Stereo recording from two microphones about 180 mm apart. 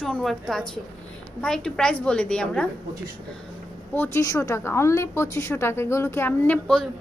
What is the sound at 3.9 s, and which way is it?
A woman's voice, 15° left (ahead or behind).